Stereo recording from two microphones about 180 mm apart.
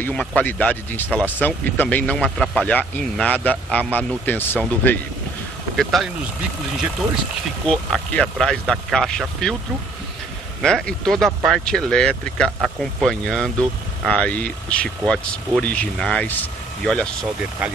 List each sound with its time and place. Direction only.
0.0 s speech: 5° left (ahead or behind)
7.6 s speech: 5° left (ahead or behind)
10.6 s speech: 5° left (ahead or behind)